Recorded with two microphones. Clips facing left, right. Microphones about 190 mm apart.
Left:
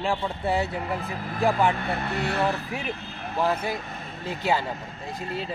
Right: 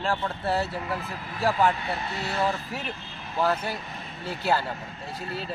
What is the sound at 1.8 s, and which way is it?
Speech, 55° left (ahead or behind).